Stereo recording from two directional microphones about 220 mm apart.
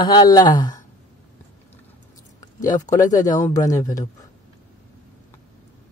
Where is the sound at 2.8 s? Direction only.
15° left (ahead or behind).